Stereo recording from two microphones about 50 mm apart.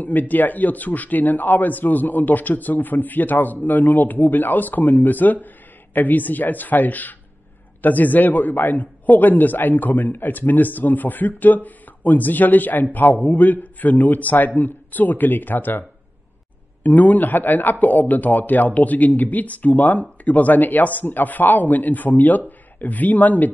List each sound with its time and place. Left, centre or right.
0.0 s a man's voice: left
16.8 s a man's voice: left